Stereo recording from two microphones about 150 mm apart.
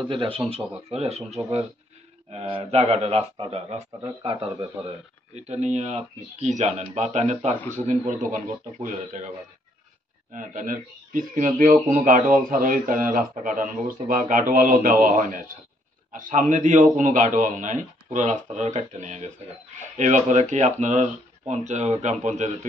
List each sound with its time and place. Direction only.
0.1 s speech: 35° right (ahead or behind)
0.9 s speech: 45° right (ahead or behind)
5.3 s speech: 50° right (ahead or behind)
10.3 s speech: 60° right (ahead or behind)